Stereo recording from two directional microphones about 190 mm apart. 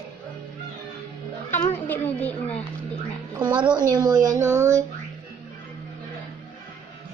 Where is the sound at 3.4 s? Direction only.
25° right (ahead or behind).